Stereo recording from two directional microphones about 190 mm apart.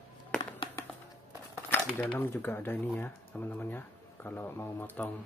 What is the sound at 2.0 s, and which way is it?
Speech, 10° left (ahead or behind).